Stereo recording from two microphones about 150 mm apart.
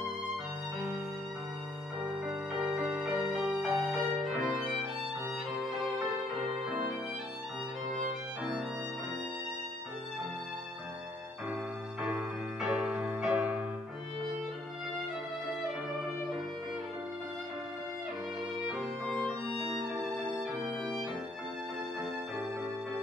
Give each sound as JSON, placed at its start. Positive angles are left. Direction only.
{"t": 2.2, "sound": "music", "side_deg": 0}
{"t": 4.2, "sound": "violin", "side_deg": 0}
{"t": 12.0, "sound": "music", "side_deg": -5}
{"t": 20.8, "sound": "violin", "side_deg": 0}